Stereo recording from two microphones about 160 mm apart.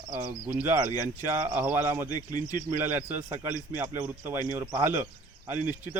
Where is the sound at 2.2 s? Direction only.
20° left (ahead or behind).